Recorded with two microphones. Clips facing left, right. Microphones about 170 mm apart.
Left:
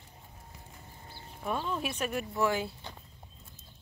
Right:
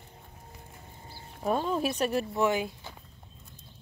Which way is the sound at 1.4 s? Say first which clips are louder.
Right 6 dB; 40° right (ahead or behind).